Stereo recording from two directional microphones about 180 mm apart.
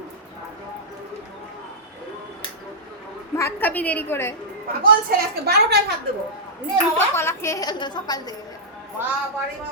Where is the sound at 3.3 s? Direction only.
15° left (ahead or behind).